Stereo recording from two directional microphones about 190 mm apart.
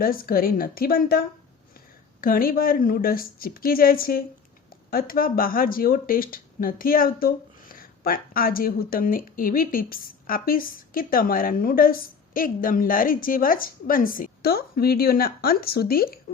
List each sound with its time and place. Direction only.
0.0 s speech: 50° left (ahead or behind)
2.2 s speech: 50° left (ahead or behind)